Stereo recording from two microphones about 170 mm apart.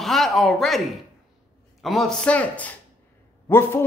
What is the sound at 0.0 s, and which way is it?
A woman's voice, centre (ahead or behind).